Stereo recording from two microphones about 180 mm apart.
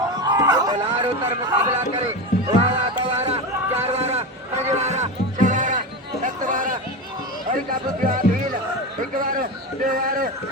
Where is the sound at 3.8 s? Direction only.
35° right (ahead or behind).